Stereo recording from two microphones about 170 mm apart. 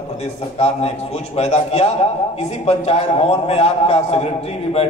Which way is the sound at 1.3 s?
40° left (ahead or behind).